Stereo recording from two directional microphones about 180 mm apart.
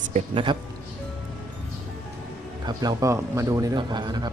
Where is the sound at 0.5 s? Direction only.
25° right (ahead or behind).